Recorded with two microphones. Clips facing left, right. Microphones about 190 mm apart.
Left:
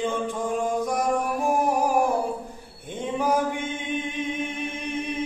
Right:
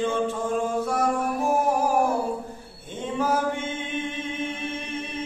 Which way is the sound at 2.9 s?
15° left (ahead or behind).